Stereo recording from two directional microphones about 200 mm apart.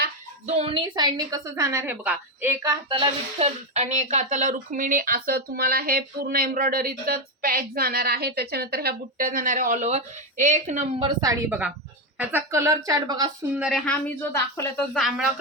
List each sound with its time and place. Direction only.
0.4 s a woman's voice: 30° right (ahead or behind); by 2.7 s 10° right (ahead or behind)
2.9 s speech: 30° right (ahead or behind)
11.0 s a woman's voice: 20° right (ahead or behind)
13.6 s speech: centre (ahead or behind)